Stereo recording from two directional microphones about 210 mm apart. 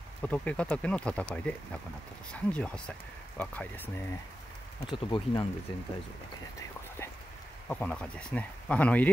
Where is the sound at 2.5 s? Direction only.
5° left (ahead or behind).